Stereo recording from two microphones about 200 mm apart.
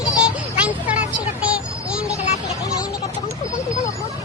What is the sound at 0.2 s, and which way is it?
Vehicle, 5° right (ahead or behind).